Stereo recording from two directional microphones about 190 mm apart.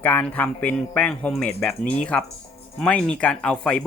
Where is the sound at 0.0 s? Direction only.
10° left (ahead or behind).